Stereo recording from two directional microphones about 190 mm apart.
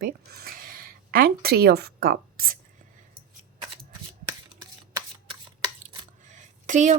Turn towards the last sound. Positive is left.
turn(degrees=-40)  # may be behind; listen again after turning